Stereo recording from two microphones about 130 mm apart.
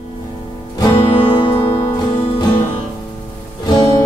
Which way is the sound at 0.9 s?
45° left (ahead or behind).